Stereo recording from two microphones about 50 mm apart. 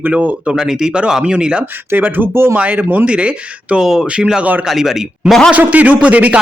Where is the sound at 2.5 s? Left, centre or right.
Right; by 5.3 s centre.